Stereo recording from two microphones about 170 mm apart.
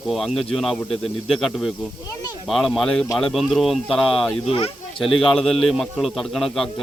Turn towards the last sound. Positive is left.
turn(degrees=0)  # may be behind; listen again after turning